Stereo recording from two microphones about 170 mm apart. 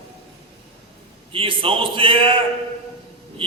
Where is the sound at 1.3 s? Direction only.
30° right (ahead or behind).